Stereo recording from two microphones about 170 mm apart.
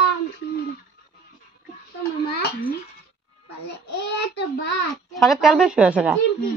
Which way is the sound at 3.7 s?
85° left.